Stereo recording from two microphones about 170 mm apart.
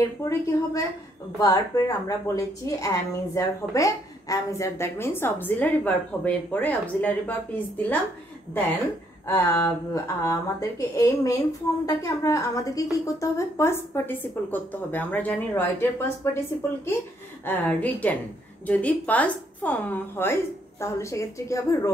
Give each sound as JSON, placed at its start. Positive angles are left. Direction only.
{"t": 0.2, "sound": "a woman's voice", "side_deg": 20}
{"t": 9.2, "sound": "a woman's voice", "side_deg": 15}
{"t": 17.5, "sound": "a woman's voice", "side_deg": 10}